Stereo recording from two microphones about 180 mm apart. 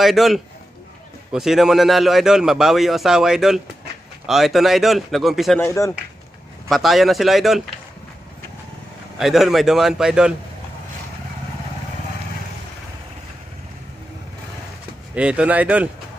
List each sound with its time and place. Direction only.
0.0 s speech: centre (ahead or behind)
5.6 s speech: 15° left (ahead or behind)
6.7 s speech: centre (ahead or behind)
9.2 s speech: centre (ahead or behind)
15.1 s speech: 5° right (ahead or behind)